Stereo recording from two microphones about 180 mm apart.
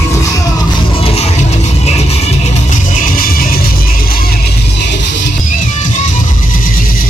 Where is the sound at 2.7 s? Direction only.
50° left (ahead or behind).